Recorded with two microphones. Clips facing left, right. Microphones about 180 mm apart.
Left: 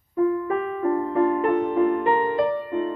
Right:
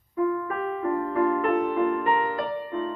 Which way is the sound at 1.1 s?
20° left (ahead or behind).